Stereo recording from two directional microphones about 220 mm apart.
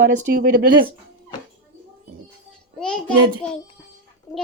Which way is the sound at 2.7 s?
5° left (ahead or behind).